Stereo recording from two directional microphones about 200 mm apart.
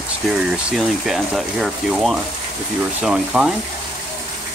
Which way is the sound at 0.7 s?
Centre (ahead or behind).